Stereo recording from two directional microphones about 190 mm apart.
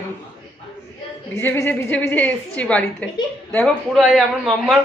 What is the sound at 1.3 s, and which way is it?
A woman's voice, 15° left (ahead or behind).